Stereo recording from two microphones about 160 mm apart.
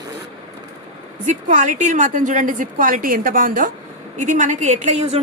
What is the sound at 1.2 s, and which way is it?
A woman's voice, 50° right (ahead or behind).